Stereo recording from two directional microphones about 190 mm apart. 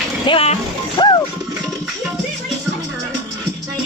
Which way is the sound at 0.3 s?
30° left (ahead or behind).